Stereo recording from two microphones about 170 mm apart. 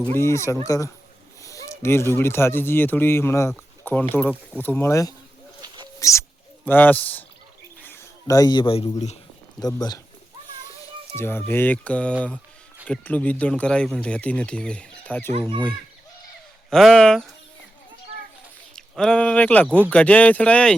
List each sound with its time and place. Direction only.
0.1 s speech: 15° left (ahead or behind)
5.6 s a sound: 25° right (ahead or behind)
6.0 s a man's voice: 20° left (ahead or behind); by 9.1 s 35° left (ahead or behind)
11.2 s speech: 10° left (ahead or behind)
16.6 s speech: centre (ahead or behind)
18.8 s speech: 5° left (ahead or behind)